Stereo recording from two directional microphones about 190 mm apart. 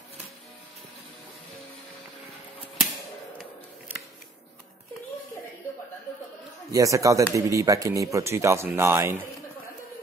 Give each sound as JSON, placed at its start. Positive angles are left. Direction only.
{"t": 6.7, "sound": "speech", "side_deg": -15}